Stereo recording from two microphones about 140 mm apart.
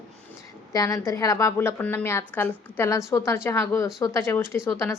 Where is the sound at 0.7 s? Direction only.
25° left (ahead or behind).